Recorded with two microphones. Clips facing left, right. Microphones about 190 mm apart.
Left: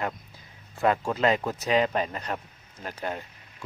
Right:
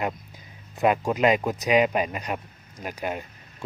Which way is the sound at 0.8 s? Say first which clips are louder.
Right 3 dB; 15° right (ahead or behind).